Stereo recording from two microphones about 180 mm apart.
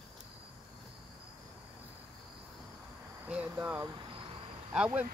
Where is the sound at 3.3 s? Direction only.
10° right (ahead or behind).